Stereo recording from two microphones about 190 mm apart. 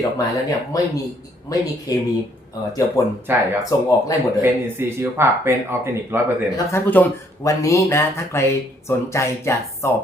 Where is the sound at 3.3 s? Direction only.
10° right (ahead or behind).